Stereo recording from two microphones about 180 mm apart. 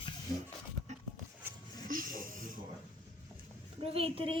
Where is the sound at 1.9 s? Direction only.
50° right (ahead or behind).